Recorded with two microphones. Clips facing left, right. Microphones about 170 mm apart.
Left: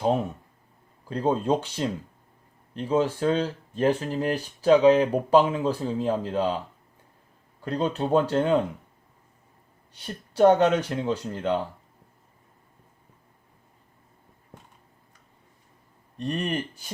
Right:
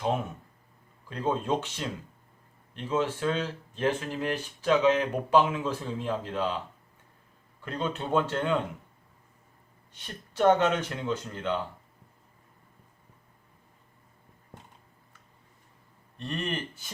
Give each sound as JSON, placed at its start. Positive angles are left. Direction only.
{"t": 1.0, "sound": "speech", "side_deg": 35}
{"t": 7.6, "sound": "speech", "side_deg": 35}
{"t": 9.9, "sound": "speech", "side_deg": 35}
{"t": 16.1, "sound": "speech", "side_deg": 40}